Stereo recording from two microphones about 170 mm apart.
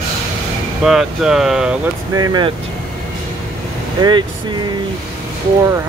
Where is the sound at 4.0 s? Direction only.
25° right (ahead or behind).